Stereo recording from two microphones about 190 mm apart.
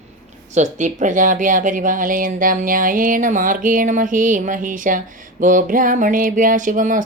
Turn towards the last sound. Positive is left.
turn(degrees=-45)  # may be behind; listen again after turning